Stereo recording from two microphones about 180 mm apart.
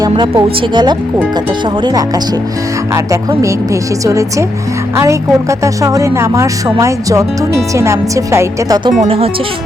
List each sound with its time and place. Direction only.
0.1 s speech: 25° right (ahead or behind)
8.9 s speech: 35° right (ahead or behind)